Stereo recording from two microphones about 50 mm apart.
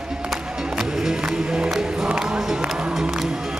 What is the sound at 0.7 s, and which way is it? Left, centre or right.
Music, centre.